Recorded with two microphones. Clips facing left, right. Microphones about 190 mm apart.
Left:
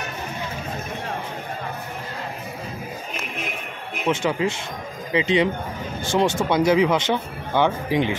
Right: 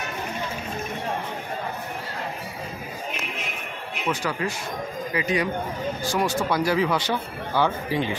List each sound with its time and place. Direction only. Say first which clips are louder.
4.1 s speech: left 5 dB; 25° left (ahead or behind)